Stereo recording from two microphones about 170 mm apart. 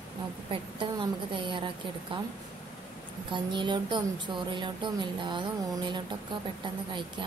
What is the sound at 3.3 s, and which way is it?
Speech, 30° right (ahead or behind).